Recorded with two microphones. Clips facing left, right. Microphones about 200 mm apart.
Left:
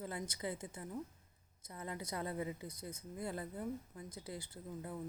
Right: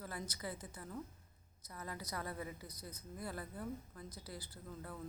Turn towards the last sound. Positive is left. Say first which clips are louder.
# left 4 dB
turn(degrees=20)  # may be behind; listen again after turning